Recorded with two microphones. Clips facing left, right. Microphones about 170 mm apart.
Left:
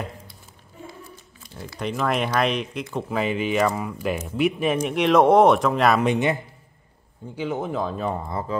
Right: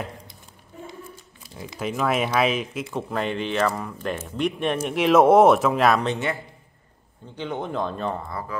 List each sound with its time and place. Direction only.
1.8 s speech: 5° right (ahead or behind)
6.0 s a man's voice: 20° left (ahead or behind)
7.3 s speech: 5° left (ahead or behind)
8.3 s speech: 25° left (ahead or behind)